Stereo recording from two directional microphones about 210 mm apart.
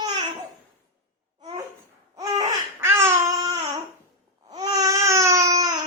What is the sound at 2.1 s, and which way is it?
Babbling, 15° right (ahead or behind).